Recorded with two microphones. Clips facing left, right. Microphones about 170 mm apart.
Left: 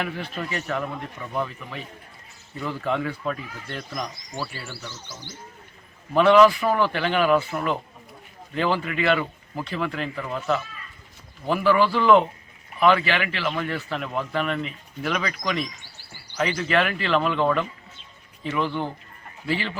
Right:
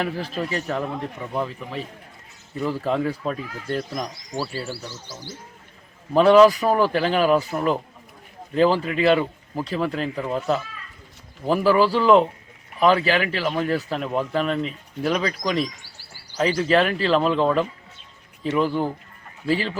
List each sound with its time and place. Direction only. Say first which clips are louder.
0.0 s speech: right 4 dB; 35° right (ahead or behind)
6.1 s speech: right 2 dB; 35° right (ahead or behind)
18.4 s speech: right 4 dB; 40° right (ahead or behind)